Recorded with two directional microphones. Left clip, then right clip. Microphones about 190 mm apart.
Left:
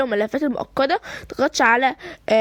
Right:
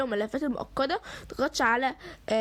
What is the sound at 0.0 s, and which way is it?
Speech, 40° left (ahead or behind).